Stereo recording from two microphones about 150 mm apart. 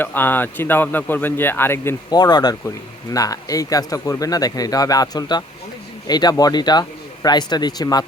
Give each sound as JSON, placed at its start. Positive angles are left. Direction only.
{"t": 0.0, "sound": "speech", "side_deg": 15}
{"t": 2.1, "sound": "speech", "side_deg": 25}